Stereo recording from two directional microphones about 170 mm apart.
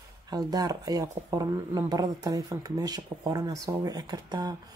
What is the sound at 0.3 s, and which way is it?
Speech, 20° right (ahead or behind).